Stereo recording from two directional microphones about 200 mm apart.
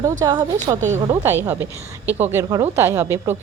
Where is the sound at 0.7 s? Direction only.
40° right (ahead or behind).